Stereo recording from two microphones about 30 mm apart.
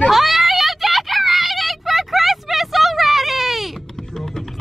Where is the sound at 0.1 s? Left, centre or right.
Centre.